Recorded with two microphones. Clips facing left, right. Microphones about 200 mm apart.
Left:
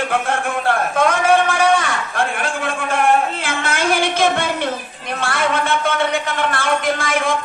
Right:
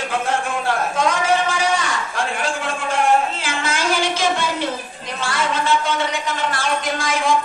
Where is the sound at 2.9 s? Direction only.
55° left (ahead or behind).